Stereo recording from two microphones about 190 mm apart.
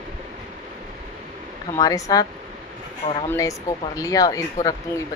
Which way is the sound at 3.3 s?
15° left (ahead or behind).